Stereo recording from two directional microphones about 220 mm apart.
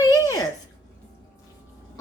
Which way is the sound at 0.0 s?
15° left (ahead or behind).